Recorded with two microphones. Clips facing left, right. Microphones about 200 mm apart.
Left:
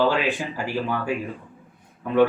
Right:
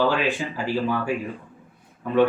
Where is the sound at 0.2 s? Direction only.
15° left (ahead or behind).